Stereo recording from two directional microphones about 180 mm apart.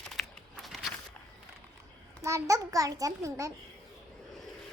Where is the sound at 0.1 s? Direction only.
Centre (ahead or behind).